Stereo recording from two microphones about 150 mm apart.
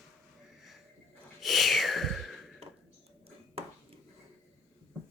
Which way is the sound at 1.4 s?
Centre (ahead or behind).